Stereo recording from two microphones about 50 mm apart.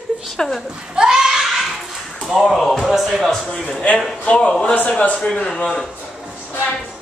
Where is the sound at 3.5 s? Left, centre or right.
Centre.